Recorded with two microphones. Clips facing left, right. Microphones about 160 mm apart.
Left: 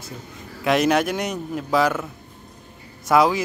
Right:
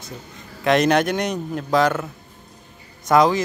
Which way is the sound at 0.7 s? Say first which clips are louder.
Right 2 dB; 5° left (ahead or behind).